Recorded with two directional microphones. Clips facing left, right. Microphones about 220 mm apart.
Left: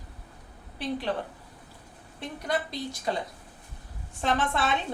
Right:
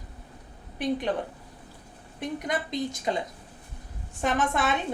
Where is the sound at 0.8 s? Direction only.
20° right (ahead or behind).